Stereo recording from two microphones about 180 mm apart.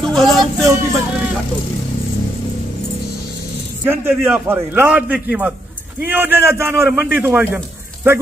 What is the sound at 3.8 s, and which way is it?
A man's voice, 10° right (ahead or behind).